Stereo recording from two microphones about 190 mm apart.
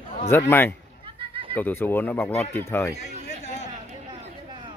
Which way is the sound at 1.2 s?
30° right (ahead or behind).